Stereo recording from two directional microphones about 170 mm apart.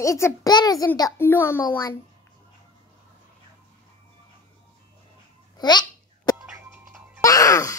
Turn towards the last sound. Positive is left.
turn(degrees=20)  # may be behind; listen again after turning